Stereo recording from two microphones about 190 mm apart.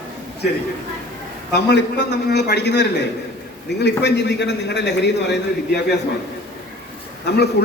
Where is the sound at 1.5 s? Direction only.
60° left (ahead or behind).